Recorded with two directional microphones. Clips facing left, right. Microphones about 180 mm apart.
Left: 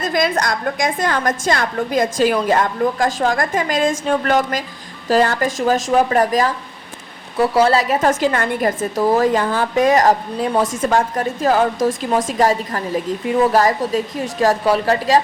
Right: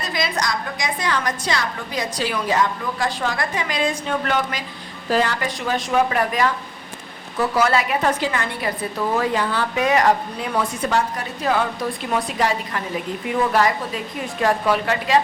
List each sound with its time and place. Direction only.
0.0 s a woman's voice: 50° left (ahead or behind)